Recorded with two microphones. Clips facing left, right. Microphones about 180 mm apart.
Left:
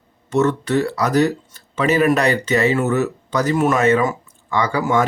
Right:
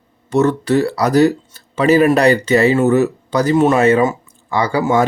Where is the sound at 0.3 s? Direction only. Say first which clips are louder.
Right 3 dB; 35° right (ahead or behind).